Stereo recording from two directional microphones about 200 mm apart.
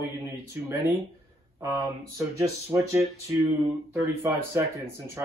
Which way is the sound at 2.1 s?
15° right (ahead or behind).